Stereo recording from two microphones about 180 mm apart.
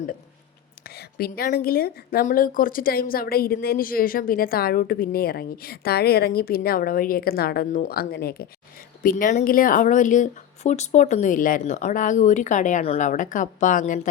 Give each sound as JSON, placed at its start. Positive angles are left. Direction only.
{"t": 0.9, "sound": "a woman's voice", "side_deg": 60}